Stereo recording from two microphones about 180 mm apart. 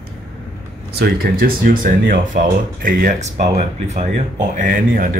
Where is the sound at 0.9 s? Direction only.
55° right (ahead or behind).